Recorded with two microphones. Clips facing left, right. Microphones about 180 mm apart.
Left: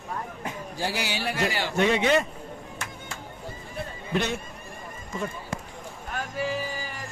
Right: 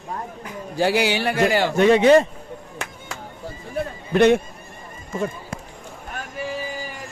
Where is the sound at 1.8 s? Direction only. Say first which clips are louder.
Right 8 dB; 40° right (ahead or behind).